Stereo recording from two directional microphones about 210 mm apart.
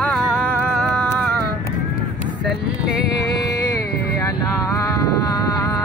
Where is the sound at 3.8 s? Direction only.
50° left (ahead or behind).